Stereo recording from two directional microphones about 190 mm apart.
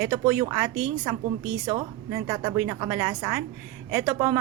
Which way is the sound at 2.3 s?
20° right (ahead or behind).